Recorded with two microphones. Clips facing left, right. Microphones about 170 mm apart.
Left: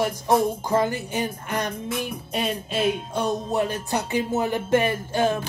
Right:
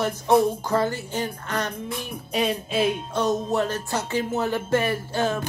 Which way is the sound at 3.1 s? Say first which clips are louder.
Right 1 dB; 15° left (ahead or behind).